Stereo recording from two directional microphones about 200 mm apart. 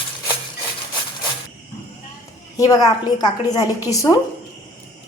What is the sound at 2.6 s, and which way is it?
A woman's voice, 20° left (ahead or behind).